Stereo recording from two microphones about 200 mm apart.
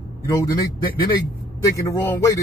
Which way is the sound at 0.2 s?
15° left (ahead or behind).